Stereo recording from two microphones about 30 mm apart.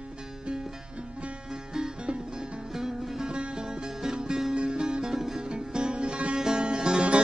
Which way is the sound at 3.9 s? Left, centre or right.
Centre.